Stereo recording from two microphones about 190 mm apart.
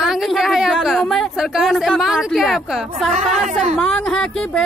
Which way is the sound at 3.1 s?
40° right (ahead or behind).